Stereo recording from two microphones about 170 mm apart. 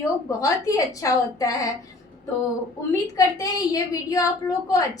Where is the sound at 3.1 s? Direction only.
20° left (ahead or behind).